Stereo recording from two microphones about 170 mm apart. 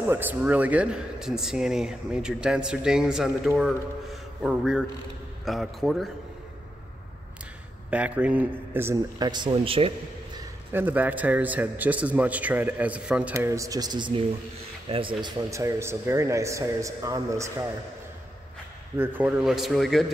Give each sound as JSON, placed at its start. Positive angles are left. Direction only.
{"t": 0.0, "sound": "speech", "side_deg": -10}
{"t": 7.9, "sound": "a man's voice", "side_deg": -5}
{"t": 10.7, "sound": "a man's voice", "side_deg": -10}
{"t": 18.9, "sound": "speech", "side_deg": -10}